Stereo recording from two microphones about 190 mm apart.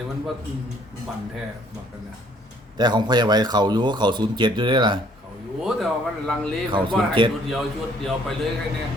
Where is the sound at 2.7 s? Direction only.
25° right (ahead or behind).